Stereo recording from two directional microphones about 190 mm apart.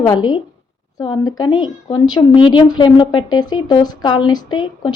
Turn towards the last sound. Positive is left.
turn(degrees=25)  # may be behind; listen again after turning